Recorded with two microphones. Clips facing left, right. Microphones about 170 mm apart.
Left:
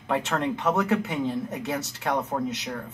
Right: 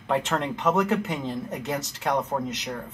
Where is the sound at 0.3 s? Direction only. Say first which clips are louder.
Right 1 dB; 15° right (ahead or behind).